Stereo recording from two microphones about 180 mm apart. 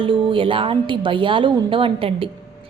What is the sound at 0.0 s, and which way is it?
A woman's voice, 30° right (ahead or behind).